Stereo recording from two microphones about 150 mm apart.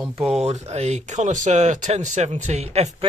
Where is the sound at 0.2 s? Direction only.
45° right (ahead or behind).